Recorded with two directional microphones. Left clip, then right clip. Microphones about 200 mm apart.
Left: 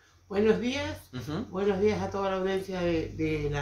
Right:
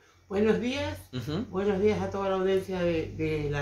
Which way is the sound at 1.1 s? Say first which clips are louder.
Right 2 dB; 15° right (ahead or behind).